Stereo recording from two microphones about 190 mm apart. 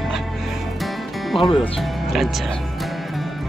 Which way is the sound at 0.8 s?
Centre (ahead or behind).